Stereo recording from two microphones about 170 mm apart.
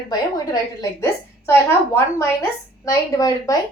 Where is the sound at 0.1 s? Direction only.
20° left (ahead or behind).